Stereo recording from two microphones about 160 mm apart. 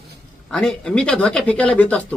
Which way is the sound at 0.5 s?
5° left (ahead or behind).